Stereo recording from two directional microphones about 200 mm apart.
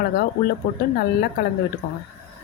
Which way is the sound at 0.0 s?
50° left (ahead or behind).